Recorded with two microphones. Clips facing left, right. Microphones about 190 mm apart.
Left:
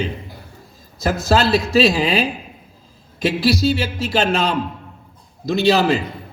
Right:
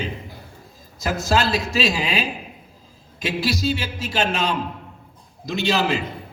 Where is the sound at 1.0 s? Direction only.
35° left (ahead or behind).